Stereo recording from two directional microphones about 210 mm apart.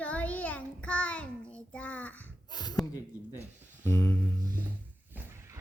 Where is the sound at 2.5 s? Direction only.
20° left (ahead or behind).